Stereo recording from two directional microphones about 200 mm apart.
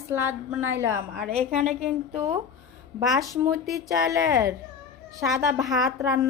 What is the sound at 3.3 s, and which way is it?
A woman's voice, 15° right (ahead or behind).